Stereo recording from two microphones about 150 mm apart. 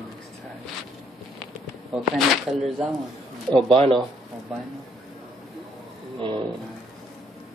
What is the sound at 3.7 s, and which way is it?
Speech, 35° right (ahead or behind).